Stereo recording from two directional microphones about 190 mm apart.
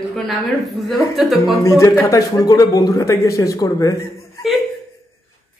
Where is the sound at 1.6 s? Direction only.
15° left (ahead or behind).